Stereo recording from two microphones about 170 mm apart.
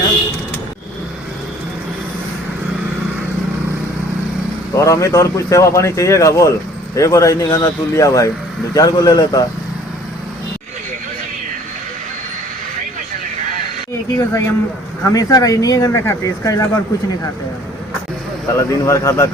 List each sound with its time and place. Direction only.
4.7 s speech: 20° left (ahead or behind)
13.9 s speech: 15° left (ahead or behind)
18.5 s speech: 15° left (ahead or behind)